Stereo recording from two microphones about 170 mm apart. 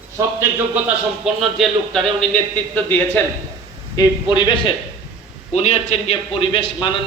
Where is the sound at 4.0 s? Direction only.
25° left (ahead or behind).